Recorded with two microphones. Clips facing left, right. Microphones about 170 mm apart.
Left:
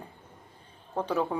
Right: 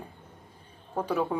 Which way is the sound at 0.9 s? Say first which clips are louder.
Even; 10° right (ahead or behind).